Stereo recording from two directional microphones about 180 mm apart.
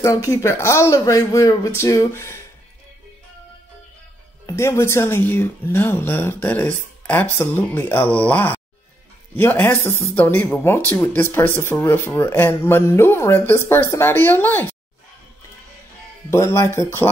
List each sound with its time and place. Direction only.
0.0 s speech: 15° left (ahead or behind)
4.5 s speech: 15° left (ahead or behind)
16.3 s speech: 15° left (ahead or behind)